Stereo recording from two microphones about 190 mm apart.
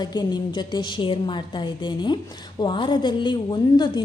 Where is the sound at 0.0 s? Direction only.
20° left (ahead or behind).